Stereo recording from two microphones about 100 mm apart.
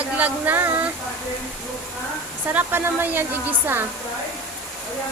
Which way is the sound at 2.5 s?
20° right (ahead or behind).